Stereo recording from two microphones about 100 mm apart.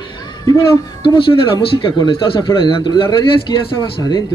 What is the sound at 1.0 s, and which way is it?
Speech, 60° left (ahead or behind).